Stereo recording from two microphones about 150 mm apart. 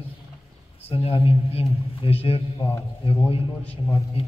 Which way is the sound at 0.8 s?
40° left (ahead or behind).